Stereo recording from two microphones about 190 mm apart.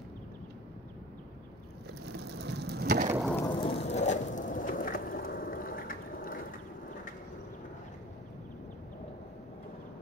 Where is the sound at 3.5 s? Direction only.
30° left (ahead or behind); by 6.4 s 50° left (ahead or behind).